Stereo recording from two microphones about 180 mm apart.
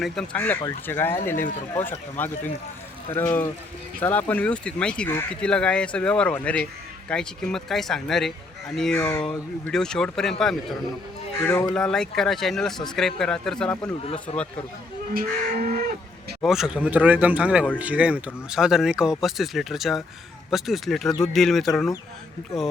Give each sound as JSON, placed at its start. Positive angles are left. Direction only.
{"t": 0.0, "sound": "speech", "side_deg": 5}
{"t": 11.4, "sound": "speech", "side_deg": 10}
{"t": 15.1, "sound": "livestock", "side_deg": -55}
{"t": 16.4, "sound": "speech", "side_deg": -5}